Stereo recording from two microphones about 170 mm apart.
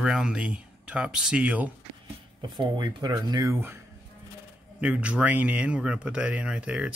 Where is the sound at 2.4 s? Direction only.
25° right (ahead or behind).